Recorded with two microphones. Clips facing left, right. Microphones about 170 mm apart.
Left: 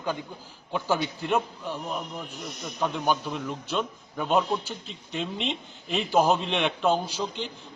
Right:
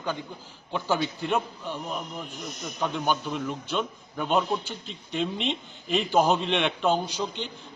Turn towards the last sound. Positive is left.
turn(degrees=0)  # may be behind; listen again after turning